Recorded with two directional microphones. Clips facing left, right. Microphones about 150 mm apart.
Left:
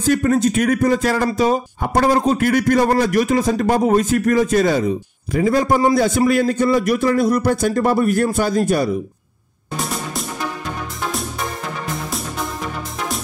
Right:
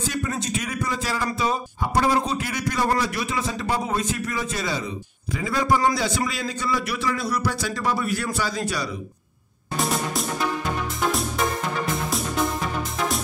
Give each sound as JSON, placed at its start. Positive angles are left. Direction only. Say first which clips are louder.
{"t": 0.0, "sound": "a man's voice", "louder": "left 12 dB", "side_deg": 50}
{"t": 9.8, "sound": "music", "louder": "right 1 dB", "side_deg": 0}